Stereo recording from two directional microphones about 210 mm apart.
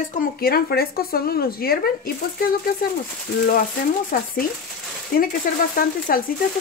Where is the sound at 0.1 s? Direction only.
45° left (ahead or behind).